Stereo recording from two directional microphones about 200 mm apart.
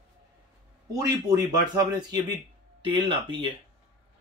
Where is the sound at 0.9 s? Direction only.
20° right (ahead or behind).